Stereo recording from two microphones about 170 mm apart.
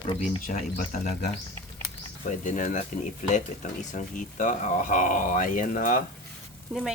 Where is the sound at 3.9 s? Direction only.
50° left (ahead or behind).